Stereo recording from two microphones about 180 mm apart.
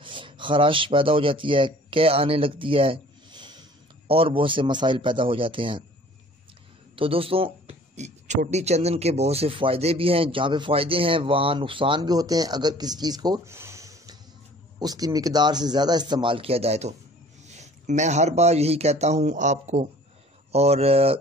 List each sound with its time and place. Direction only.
0.0 s speech: 25° right (ahead or behind)
7.0 s speech: 30° right (ahead or behind)